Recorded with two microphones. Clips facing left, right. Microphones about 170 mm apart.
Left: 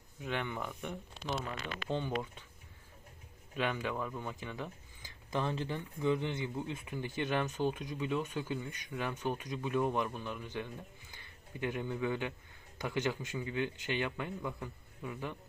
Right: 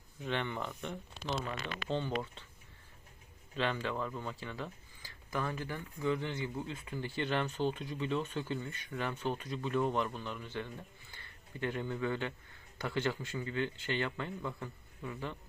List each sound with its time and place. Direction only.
0.2 s speech: 5° left (ahead or behind)
3.5 s speech: 10° left (ahead or behind)